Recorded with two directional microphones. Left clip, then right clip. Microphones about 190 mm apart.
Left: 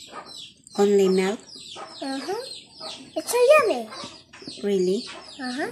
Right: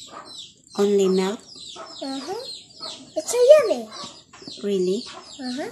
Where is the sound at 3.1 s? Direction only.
30° right (ahead or behind).